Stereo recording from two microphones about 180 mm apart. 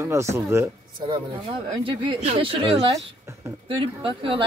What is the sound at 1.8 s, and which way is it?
Speech, 35° right (ahead or behind).